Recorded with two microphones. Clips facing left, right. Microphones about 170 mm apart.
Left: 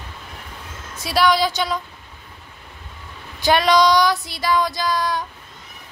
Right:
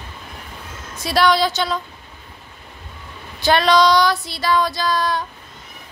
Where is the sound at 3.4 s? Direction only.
15° left (ahead or behind).